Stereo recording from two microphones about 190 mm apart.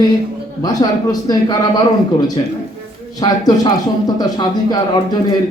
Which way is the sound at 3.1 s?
20° left (ahead or behind).